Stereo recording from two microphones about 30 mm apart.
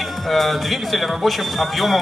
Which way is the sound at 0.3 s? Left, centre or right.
Centre.